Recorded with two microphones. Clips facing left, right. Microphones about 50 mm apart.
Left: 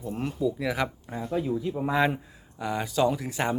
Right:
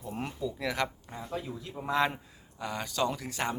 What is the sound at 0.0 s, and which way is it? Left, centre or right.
Speech, centre.